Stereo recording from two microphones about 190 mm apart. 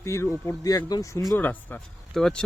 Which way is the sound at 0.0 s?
15° left (ahead or behind).